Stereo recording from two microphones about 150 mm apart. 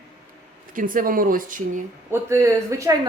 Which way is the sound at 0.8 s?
65° right (ahead or behind).